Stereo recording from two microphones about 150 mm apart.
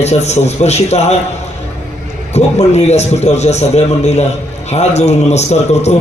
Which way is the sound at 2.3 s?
45° left (ahead or behind).